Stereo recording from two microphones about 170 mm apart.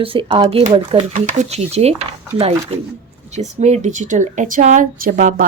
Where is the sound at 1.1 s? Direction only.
45° right (ahead or behind).